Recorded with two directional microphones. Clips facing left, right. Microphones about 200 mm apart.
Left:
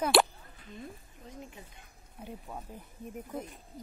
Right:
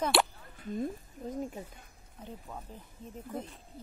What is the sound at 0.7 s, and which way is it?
Speech, 45° right (ahead or behind).